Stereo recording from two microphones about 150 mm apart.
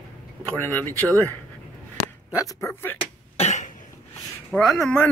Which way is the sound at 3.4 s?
50° left (ahead or behind).